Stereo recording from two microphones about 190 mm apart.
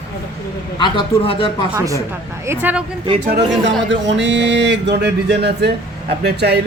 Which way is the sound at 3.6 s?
70° right (ahead or behind).